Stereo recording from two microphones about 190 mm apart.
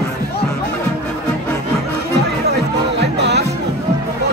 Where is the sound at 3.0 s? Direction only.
60° right (ahead or behind).